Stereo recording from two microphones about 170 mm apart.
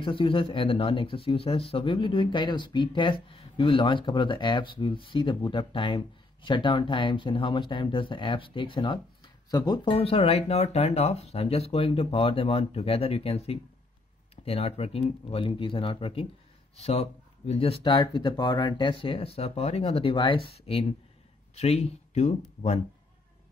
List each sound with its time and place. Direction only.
0.0 s speech: 30° left (ahead or behind)